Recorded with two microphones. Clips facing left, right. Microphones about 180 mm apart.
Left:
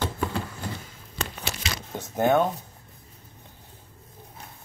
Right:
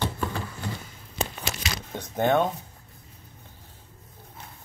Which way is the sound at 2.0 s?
5° left (ahead or behind).